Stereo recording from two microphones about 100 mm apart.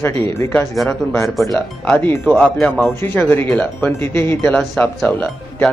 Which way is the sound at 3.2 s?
20° left (ahead or behind).